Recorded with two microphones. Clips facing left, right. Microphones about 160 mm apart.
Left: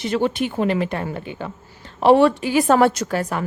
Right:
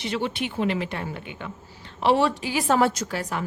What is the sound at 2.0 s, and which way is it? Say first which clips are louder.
A woman's voice: left 7 dB; 50° left (ahead or behind).